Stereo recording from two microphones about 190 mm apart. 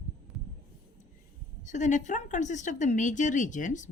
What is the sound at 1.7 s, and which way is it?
Speech, 40° left (ahead or behind).